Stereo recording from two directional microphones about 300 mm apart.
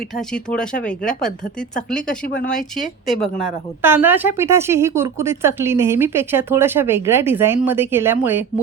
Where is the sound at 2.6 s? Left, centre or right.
Left.